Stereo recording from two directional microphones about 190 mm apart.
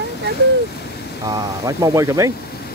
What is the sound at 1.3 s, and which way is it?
Speech, 20° right (ahead or behind).